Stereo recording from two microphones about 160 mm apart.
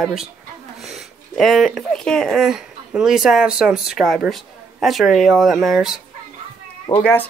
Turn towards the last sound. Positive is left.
turn(degrees=35)  # may be behind; listen again after turning